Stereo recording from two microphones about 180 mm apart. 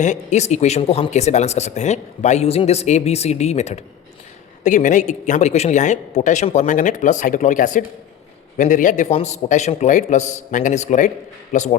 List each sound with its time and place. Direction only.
0.0 s speech: 40° left (ahead or behind)